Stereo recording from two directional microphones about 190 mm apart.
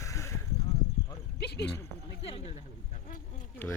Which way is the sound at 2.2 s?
30° left (ahead or behind).